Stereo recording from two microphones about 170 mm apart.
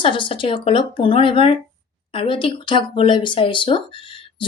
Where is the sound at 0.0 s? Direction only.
30° left (ahead or behind).